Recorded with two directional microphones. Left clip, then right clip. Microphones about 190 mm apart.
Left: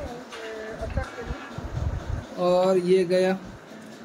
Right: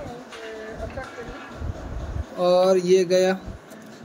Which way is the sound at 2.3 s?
25° right (ahead or behind).